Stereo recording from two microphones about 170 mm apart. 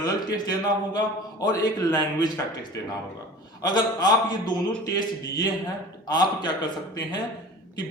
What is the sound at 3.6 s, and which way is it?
A man's voice, 25° left (ahead or behind).